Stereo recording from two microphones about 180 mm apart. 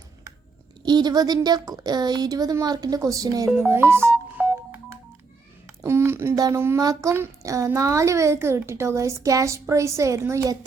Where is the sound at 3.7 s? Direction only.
15° right (ahead or behind).